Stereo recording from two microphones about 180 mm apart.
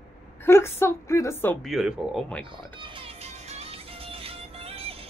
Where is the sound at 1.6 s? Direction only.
Centre (ahead or behind).